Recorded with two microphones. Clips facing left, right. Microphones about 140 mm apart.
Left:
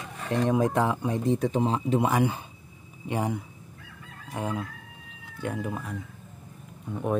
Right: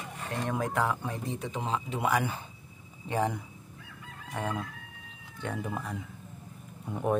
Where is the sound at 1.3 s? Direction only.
40° left (ahead or behind).